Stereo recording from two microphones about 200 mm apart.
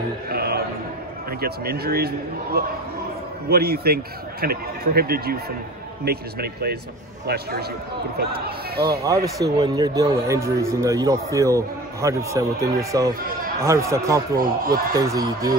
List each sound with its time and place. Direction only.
0.3 s a sound: 50° right (ahead or behind)
1.4 s a man's voice: 50° right (ahead or behind)
9.0 s a man's voice: 15° right (ahead or behind)